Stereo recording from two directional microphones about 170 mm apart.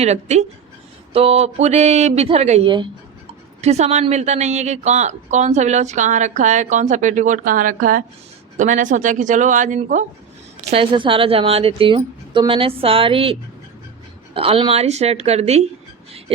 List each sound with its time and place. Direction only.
0.0 s a woman's voice: 40° right (ahead or behind)
3.6 s speech: 40° right (ahead or behind)
10.7 s a woman's voice: 30° right (ahead or behind)
14.3 s a woman's voice: 35° right (ahead or behind)